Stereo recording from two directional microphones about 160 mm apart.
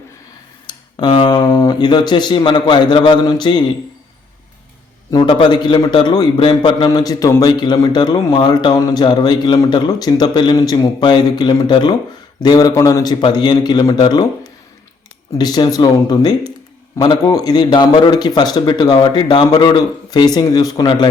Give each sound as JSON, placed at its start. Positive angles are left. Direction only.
{"t": 0.7, "sound": "speech", "side_deg": 30}
{"t": 5.1, "sound": "a man's voice", "side_deg": 30}
{"t": 15.3, "sound": "a man's voice", "side_deg": 25}